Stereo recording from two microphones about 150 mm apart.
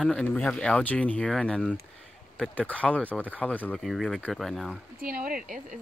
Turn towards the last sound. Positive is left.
turn(degrees=-70)  # may be behind; listen again after turning